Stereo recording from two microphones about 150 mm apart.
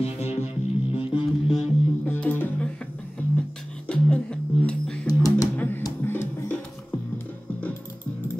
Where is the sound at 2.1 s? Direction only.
15° left (ahead or behind).